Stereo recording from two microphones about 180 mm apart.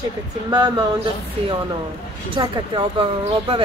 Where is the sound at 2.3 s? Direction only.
30° right (ahead or behind).